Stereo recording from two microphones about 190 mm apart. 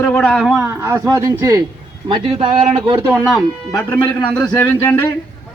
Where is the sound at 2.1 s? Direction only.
30° right (ahead or behind).